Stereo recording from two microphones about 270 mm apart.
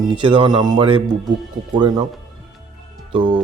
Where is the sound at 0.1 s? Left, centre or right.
Centre.